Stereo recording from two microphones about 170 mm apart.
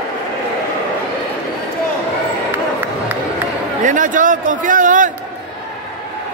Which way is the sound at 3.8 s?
50° right (ahead or behind).